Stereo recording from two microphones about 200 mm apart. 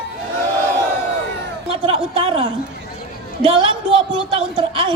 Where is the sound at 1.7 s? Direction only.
30° right (ahead or behind).